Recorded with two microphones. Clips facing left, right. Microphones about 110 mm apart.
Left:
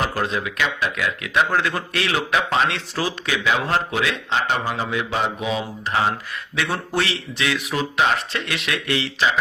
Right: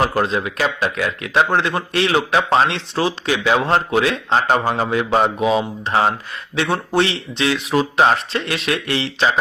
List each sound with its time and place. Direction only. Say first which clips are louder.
0.2 s speech: right 4 dB; 30° right (ahead or behind)